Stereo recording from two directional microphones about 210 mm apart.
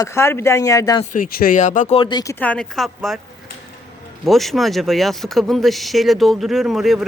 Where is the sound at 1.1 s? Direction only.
45° left (ahead or behind); by 2.3 s 20° left (ahead or behind).